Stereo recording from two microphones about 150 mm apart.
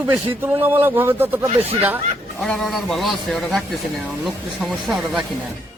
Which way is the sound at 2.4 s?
5° left (ahead or behind).